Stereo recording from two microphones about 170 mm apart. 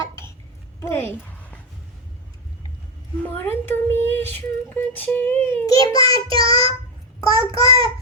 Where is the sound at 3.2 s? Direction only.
10° left (ahead or behind).